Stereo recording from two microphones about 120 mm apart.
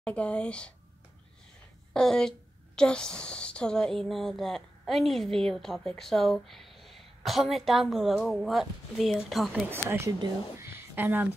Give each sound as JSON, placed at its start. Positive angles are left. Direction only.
{"t": 0.0, "sound": "speech", "side_deg": 10}
{"t": 2.0, "sound": "a woman's voice", "side_deg": 5}
{"t": 9.5, "sound": "speech", "side_deg": -15}
{"t": 10.6, "sound": "a sound", "side_deg": -20}